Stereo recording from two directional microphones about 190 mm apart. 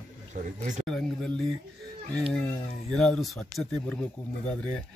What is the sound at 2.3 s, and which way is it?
A man's voice, 5° left (ahead or behind).